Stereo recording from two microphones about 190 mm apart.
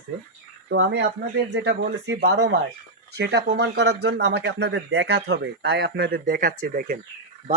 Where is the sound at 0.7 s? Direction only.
70° right (ahead or behind); by 7.0 s 50° right (ahead or behind).